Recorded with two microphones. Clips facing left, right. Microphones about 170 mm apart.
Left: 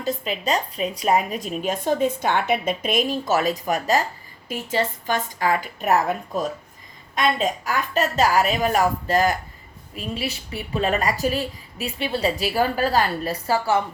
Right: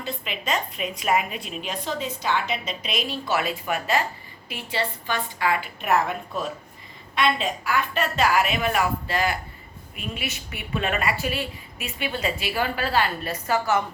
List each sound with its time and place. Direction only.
0.0 s a woman's voice: 40° left (ahead or behind)